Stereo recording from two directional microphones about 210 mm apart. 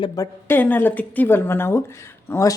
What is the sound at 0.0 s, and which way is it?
Speech, 15° left (ahead or behind).